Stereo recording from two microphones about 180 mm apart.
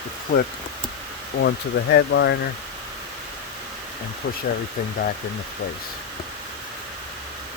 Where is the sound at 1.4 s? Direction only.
70° left (ahead or behind).